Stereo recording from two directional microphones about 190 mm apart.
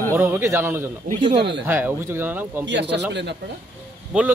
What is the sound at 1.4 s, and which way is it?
Speech, 60° right (ahead or behind).